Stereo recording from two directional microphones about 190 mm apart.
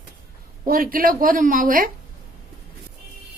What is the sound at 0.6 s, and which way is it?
A woman's voice, 50° right (ahead or behind).